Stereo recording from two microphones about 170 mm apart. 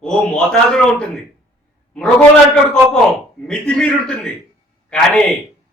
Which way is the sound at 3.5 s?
5° left (ahead or behind).